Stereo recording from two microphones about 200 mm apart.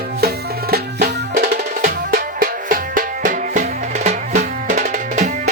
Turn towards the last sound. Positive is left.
turn(degrees=-35)  # may be behind; listen again after turning